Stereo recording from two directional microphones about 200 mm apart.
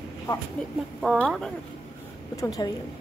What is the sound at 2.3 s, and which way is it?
Speech, 15° left (ahead or behind).